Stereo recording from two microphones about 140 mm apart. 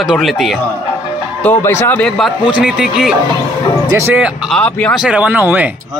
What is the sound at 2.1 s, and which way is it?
Speech, centre (ahead or behind).